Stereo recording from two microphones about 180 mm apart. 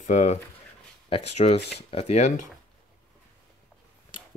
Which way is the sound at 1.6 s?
65° left (ahead or behind).